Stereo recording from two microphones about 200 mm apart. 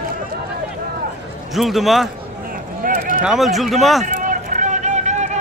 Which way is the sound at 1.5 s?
Centre (ahead or behind).